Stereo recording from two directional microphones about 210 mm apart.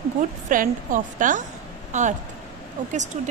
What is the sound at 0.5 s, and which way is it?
A woman's voice, 40° right (ahead or behind).